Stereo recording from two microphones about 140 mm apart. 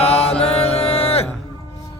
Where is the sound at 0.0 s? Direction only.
45° left (ahead or behind).